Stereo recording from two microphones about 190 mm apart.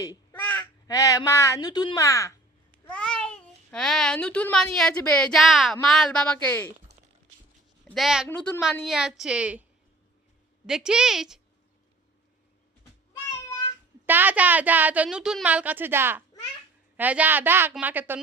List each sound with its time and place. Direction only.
0.3 s speech: 10° left (ahead or behind)
2.8 s a child's voice: 5° left (ahead or behind)
7.9 s a woman's voice: centre (ahead or behind)
10.7 s a woman's voice: 5° right (ahead or behind)
14.1 s a woman's voice: 10° right (ahead or behind)